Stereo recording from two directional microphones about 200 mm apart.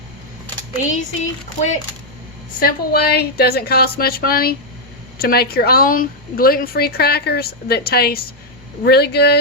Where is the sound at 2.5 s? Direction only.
50° left (ahead or behind).